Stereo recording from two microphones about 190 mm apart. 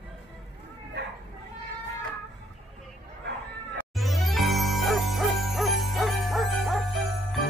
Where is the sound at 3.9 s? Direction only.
Centre (ahead or behind).